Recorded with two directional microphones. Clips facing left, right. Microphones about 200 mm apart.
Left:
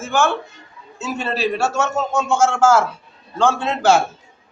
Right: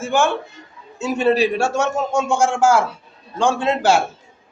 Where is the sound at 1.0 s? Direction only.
15° right (ahead or behind).